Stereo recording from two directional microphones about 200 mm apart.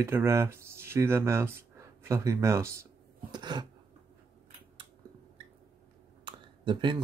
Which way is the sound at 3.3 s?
20° right (ahead or behind).